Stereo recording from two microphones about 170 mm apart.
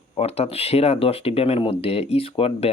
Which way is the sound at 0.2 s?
35° left (ahead or behind).